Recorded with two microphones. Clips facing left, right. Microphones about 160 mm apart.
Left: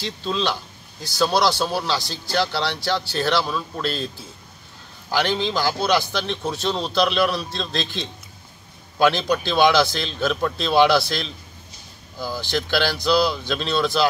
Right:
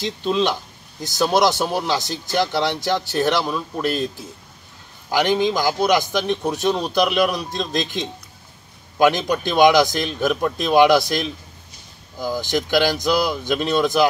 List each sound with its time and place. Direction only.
0.0 s speech: 20° right (ahead or behind)
5.1 s speech: 15° right (ahead or behind)